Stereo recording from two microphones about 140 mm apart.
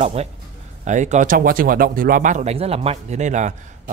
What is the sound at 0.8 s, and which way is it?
Speech, 60° right (ahead or behind).